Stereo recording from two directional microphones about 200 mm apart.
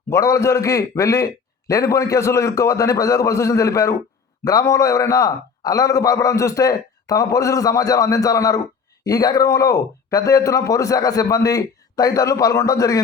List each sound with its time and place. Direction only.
0.1 s a man's voice: 15° left (ahead or behind)